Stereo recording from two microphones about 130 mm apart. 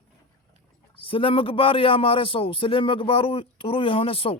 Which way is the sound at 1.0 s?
45° left (ahead or behind).